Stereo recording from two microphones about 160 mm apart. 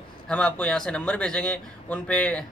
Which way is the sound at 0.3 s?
5° left (ahead or behind).